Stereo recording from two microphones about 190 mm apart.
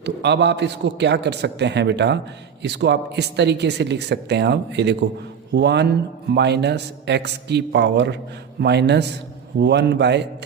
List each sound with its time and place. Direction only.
0.0 s speech: 65° right (ahead or behind)